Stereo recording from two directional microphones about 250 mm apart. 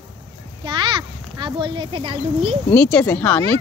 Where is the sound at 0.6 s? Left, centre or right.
Centre.